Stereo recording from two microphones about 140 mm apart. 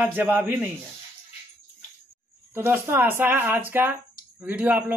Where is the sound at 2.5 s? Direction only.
15° right (ahead or behind).